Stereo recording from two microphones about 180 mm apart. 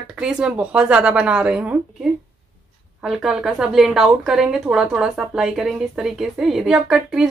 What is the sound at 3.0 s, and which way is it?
A woman's voice, centre (ahead or behind).